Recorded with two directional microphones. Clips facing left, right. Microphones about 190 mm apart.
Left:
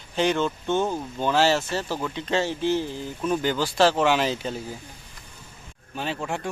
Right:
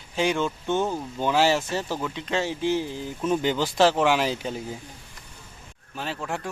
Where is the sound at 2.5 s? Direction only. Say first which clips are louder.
Left 1 dB; 15° right (ahead or behind).